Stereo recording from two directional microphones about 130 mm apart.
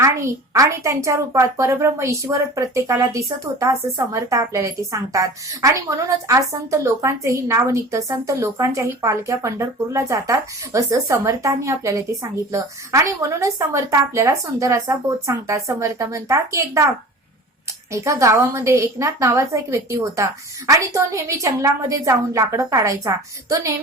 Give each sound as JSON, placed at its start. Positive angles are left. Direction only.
{"t": 0.0, "sound": "a woman's voice", "side_deg": -25}
{"t": 17.9, "sound": "a woman's voice", "side_deg": -25}